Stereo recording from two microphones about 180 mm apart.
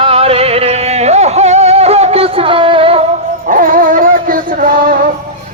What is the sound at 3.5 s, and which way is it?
Dog, 50° right (ahead or behind).